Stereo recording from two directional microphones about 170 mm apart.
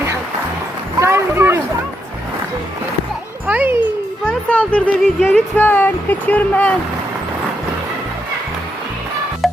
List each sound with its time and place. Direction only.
0.9 s a sound: 15° right (ahead or behind)
3.4 s music: 10° right (ahead or behind)
4.3 s speech: 10° left (ahead or behind)
9.4 s music: centre (ahead or behind)